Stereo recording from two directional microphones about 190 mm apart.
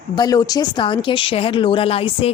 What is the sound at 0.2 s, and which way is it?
Speech, 20° left (ahead or behind).